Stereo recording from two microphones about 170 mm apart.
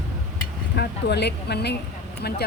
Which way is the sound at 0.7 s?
75° left (ahead or behind).